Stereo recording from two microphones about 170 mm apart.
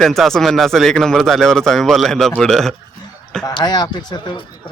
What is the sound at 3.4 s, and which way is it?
Speech, 25° left (ahead or behind).